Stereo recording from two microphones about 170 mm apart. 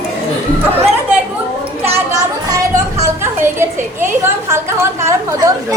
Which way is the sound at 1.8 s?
15° right (ahead or behind).